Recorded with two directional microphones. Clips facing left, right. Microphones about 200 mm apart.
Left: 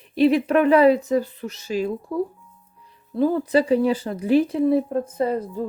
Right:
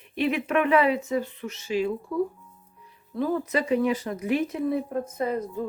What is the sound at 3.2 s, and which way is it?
Speech, 30° left (ahead or behind).